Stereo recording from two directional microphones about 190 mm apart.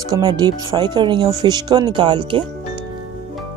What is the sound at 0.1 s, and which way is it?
Speech, 25° right (ahead or behind).